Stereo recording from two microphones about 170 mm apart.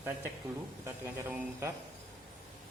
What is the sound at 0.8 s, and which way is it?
Speech, 15° right (ahead or behind).